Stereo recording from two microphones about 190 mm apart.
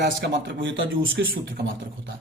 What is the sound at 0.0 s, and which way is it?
Speech, 65° right (ahead or behind).